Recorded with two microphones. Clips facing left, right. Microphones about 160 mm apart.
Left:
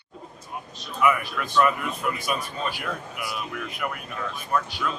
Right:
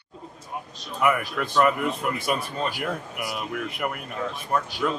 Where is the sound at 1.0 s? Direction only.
45° right (ahead or behind).